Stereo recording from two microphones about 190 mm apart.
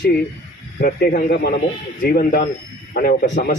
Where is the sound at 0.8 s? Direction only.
50° left (ahead or behind).